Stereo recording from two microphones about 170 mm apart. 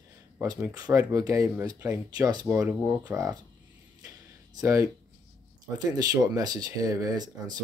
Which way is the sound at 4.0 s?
20° right (ahead or behind).